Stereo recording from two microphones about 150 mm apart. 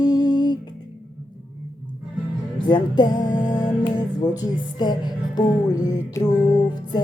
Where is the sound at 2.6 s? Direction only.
30° left (ahead or behind).